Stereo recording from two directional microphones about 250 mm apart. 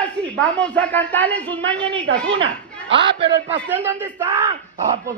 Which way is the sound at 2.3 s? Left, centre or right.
Right.